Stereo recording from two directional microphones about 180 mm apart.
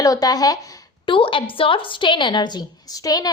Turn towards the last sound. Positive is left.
turn(degrees=20)  # may be behind; listen again after turning